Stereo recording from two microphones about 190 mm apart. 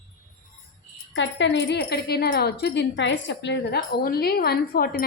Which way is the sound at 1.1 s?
70° left (ahead or behind).